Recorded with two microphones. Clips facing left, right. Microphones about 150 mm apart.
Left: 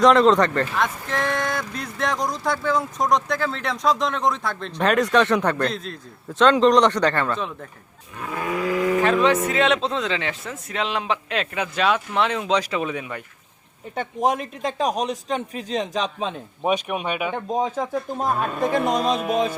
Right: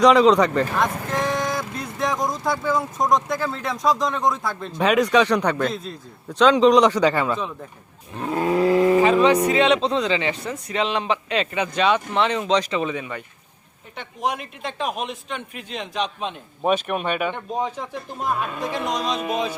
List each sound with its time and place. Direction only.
0.0 s speech: centre (ahead or behind)
8.2 s livestock: 30° right (ahead or behind)
9.5 s speech: centre (ahead or behind)
13.9 s speech: 45° left (ahead or behind)
16.6 s speech: 5° left (ahead or behind)
17.3 s speech: 45° left (ahead or behind)
19.1 s speech: centre (ahead or behind)